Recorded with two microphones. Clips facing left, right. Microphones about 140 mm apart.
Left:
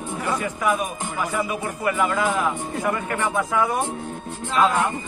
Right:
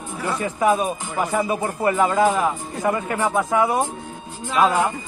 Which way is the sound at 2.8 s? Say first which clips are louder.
Right 4 dB; 20° right (ahead or behind).